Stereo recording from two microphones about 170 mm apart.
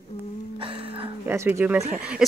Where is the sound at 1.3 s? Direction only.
15° right (ahead or behind).